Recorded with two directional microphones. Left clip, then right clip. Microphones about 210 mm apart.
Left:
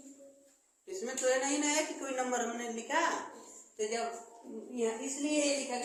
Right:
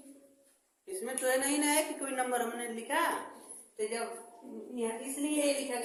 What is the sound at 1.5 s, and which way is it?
A woman's voice, 25° right (ahead or behind).